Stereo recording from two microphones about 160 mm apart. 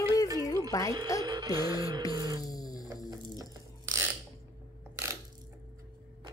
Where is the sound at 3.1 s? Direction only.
25° right (ahead or behind).